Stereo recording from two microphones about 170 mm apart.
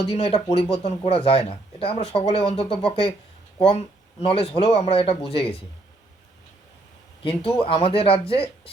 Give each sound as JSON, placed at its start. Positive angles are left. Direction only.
{"t": 0.1, "sound": "speech", "side_deg": 35}
{"t": 7.3, "sound": "speech", "side_deg": 30}